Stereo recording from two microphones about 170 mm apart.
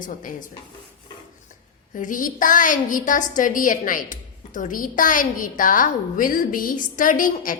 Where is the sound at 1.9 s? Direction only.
50° left (ahead or behind).